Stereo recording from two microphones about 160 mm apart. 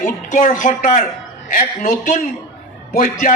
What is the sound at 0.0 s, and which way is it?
A man's voice, 55° left (ahead or behind).